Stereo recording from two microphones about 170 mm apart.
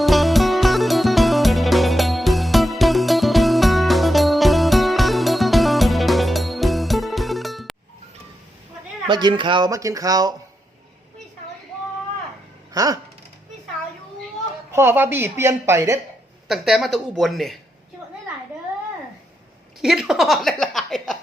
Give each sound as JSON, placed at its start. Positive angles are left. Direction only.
{"t": 0.0, "sound": "music", "side_deg": 0}
{"t": 9.0, "sound": "speech", "side_deg": -25}
{"t": 12.7, "sound": "a sound", "side_deg": -20}
{"t": 14.7, "sound": "a woman's voice", "side_deg": -15}
{"t": 16.5, "sound": "speech", "side_deg": 0}
{"t": 19.8, "sound": "speech", "side_deg": -5}